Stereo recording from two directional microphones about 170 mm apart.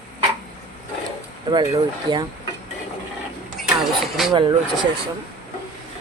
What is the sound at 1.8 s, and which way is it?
Speech, 25° right (ahead or behind).